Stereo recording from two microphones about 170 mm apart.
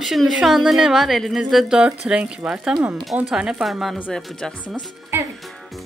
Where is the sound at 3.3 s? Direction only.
5° right (ahead or behind).